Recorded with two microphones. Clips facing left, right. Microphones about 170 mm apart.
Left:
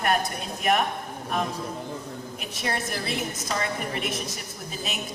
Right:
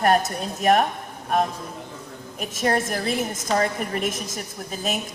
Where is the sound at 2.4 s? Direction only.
45° right (ahead or behind).